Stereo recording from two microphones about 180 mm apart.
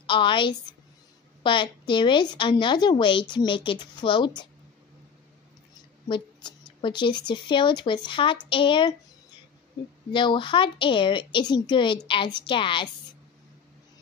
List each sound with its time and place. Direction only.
0.0 s a woman's voice: 25° left (ahead or behind)
6.0 s a woman's voice: 25° left (ahead or behind)
10.1 s a woman's voice: 25° left (ahead or behind)